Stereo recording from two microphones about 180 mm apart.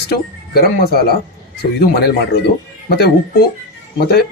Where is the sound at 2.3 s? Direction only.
65° left (ahead or behind).